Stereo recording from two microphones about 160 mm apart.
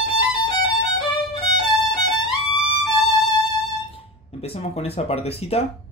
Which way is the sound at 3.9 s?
40° left (ahead or behind).